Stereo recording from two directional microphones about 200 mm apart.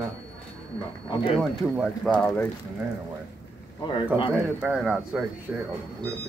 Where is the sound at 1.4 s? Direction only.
Centre (ahead or behind).